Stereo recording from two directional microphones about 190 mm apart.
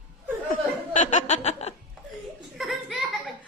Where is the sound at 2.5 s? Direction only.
Centre (ahead or behind).